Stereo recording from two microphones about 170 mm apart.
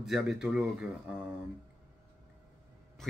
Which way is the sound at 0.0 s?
Centre (ahead or behind).